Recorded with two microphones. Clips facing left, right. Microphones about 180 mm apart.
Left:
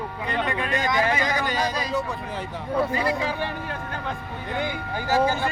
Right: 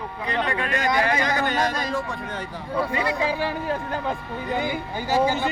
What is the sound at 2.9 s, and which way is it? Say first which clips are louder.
Speech: left 1 dB; 30° left (ahead or behind).